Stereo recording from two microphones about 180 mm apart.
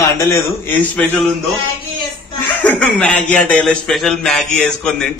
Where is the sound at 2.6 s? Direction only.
5° left (ahead or behind).